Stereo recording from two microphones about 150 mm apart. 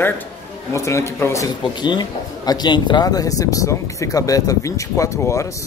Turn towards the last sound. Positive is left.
turn(degrees=20)  # may be behind; listen again after turning